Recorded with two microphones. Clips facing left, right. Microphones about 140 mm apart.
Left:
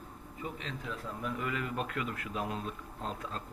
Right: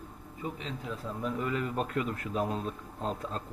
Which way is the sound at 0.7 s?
25° right (ahead or behind).